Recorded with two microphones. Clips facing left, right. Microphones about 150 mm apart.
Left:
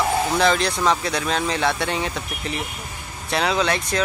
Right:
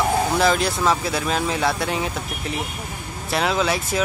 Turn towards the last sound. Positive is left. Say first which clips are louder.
# even
turn(degrees=-5)  # may be behind; listen again after turning